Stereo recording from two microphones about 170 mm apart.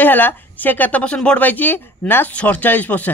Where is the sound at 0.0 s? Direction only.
10° left (ahead or behind).